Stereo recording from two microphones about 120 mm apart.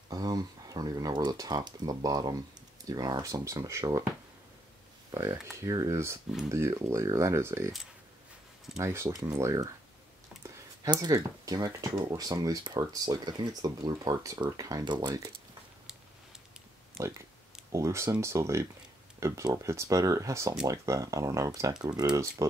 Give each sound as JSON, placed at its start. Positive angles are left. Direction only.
{"t": 0.1, "sound": "speech", "side_deg": -35}
{"t": 5.1, "sound": "speech", "side_deg": -25}
{"t": 8.7, "sound": "speech", "side_deg": -25}
{"t": 17.0, "sound": "speech", "side_deg": -5}
{"t": 17.7, "sound": "speech", "side_deg": -25}